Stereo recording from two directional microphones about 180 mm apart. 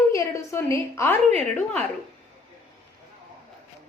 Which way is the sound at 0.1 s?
15° left (ahead or behind).